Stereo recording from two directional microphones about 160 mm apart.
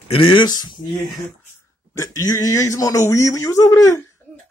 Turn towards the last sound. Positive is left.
turn(degrees=20)  # may be behind; listen again after turning